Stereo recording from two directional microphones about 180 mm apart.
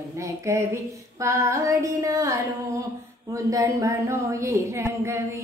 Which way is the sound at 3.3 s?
15° right (ahead or behind).